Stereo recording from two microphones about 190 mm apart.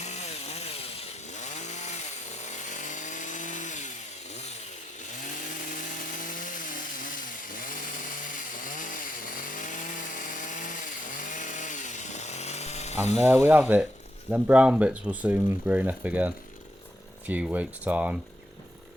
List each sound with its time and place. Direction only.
0.0 s chainsaw: 35° left (ahead or behind)
5.0 s chainsaw: 40° left (ahead or behind)
13.2 s speech: 10° right (ahead or behind)